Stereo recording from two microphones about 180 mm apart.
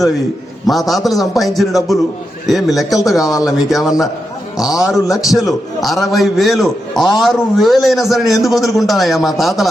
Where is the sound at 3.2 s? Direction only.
20° left (ahead or behind).